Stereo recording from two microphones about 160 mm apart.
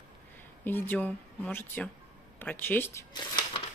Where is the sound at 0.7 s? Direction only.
10° left (ahead or behind).